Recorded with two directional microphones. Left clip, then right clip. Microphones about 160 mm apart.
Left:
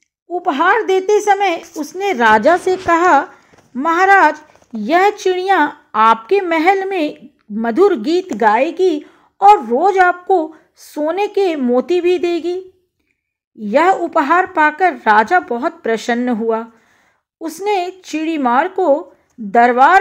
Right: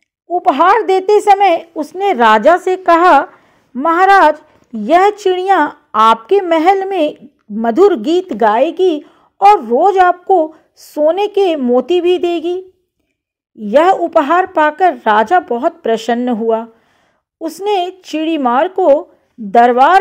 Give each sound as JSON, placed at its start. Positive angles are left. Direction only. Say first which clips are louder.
{"t": 0.3, "sound": "a woman's voice", "louder": "right 4 dB", "side_deg": -30}
{"t": 8.7, "sound": "a sound", "louder": "right 2 dB", "side_deg": -30}
{"t": 9.6, "sound": "a woman's voice", "louder": "right 3 dB", "side_deg": -25}